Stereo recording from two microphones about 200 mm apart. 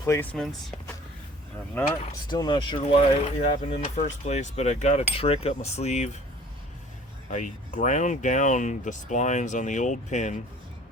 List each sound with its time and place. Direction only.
0.0 s speech: 10° left (ahead or behind)
2.3 s speech: 20° left (ahead or behind)
7.3 s speech: 40° left (ahead or behind)